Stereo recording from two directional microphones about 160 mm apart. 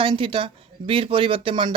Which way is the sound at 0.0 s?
35° right (ahead or behind).